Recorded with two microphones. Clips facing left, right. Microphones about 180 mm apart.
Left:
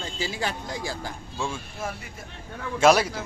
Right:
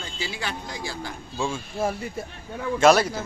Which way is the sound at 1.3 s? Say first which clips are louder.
Right 4 dB; 10° right (ahead or behind).